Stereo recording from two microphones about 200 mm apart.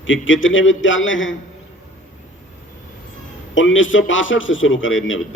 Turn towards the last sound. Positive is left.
turn(degrees=75)  # may be behind; listen again after turning